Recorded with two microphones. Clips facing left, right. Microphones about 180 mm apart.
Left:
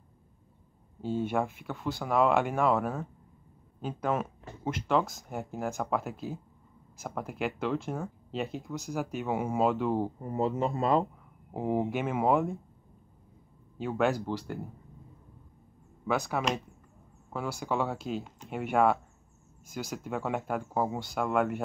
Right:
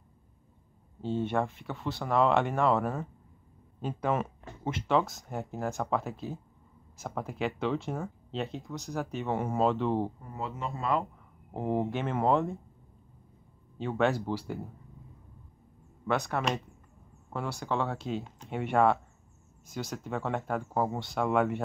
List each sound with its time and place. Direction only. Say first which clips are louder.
1.0 s speech: even; 5° left (ahead or behind)
10.2 s speech: left 8 dB; 40° left (ahead or behind)
11.5 s speech: left 1 dB; 10° left (ahead or behind)
13.7 s speech: even; 5° left (ahead or behind)
16.1 s speech: even; 5° left (ahead or behind)